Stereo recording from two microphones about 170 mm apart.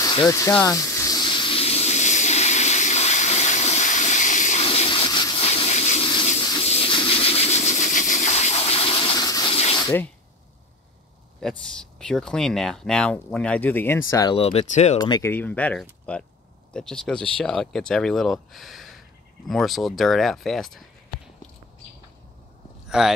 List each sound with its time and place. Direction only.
0.0 s speech: 25° left (ahead or behind)
0.7 s steam: 20° left (ahead or behind); by 4.6 s 45° left (ahead or behind)
4.6 s water: 35° left (ahead or behind)
6.6 s a sound: 35° left (ahead or behind)
11.4 s speech: 5° left (ahead or behind)
14.3 s speech: 35° left (ahead or behind)
15.0 s speech: 20° left (ahead or behind)
15.3 s speech: 10° left (ahead or behind)
22.8 s speech: 5° right (ahead or behind)